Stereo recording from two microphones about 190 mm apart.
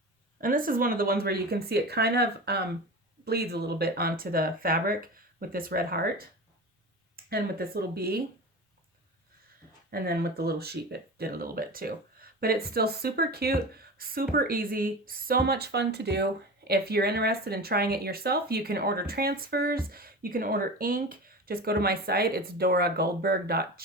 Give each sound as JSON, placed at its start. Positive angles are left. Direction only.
{"t": 0.4, "sound": "speech", "side_deg": -45}
{"t": 9.9, "sound": "speech", "side_deg": -55}